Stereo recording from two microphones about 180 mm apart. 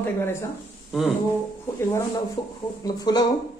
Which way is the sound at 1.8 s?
15° left (ahead or behind).